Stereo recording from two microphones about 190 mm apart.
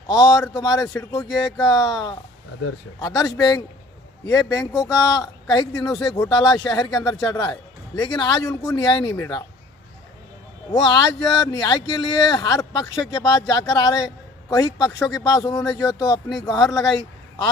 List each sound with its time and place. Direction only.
0.1 s speech: 20° left (ahead or behind)
3.2 s speech: 20° left (ahead or behind)
10.7 s speech: 20° left (ahead or behind)